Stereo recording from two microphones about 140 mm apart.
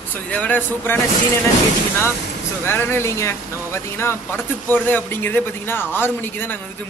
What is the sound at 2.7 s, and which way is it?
A man's voice, 15° left (ahead or behind).